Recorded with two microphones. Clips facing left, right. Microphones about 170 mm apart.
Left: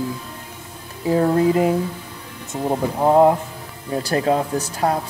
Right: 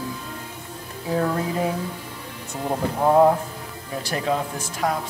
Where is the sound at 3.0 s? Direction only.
20° left (ahead or behind).